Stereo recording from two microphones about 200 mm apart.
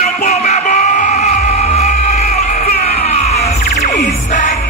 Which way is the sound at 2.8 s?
30° left (ahead or behind).